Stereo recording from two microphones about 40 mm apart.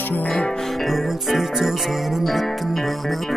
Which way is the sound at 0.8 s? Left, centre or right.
Centre.